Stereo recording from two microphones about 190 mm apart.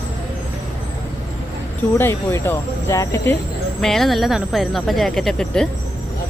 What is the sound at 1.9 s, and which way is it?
Speech, 10° left (ahead or behind).